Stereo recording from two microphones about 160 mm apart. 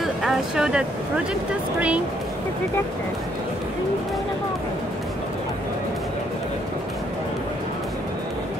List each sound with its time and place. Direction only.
0.0 s speech: 5° right (ahead or behind)